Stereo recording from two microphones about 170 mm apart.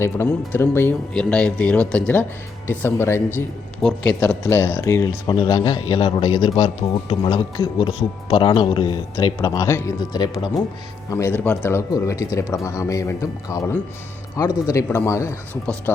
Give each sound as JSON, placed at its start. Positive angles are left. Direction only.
{"t": 0.0, "sound": "speech", "side_deg": 10}